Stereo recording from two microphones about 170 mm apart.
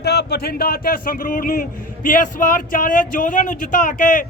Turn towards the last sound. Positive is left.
turn(degrees=50)  # may be behind; listen again after turning